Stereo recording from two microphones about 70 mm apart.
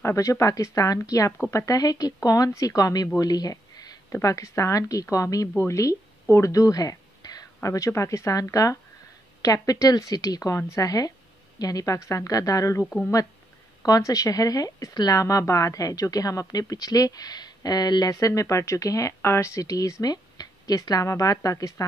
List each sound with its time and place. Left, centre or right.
0.0 s speech: left
3.2 s a sound: left
4.1 s speech: left
6.5 s whispering: left
7.6 s speech: left
13.8 s speech: left
18.2 s speech: left